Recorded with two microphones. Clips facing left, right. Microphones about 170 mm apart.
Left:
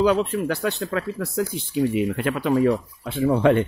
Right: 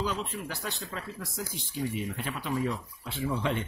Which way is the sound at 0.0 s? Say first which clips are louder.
Left 13 dB; 70° left (ahead or behind).